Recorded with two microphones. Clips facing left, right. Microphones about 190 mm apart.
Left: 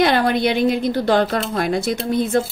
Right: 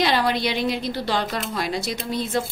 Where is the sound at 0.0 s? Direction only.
55° left (ahead or behind).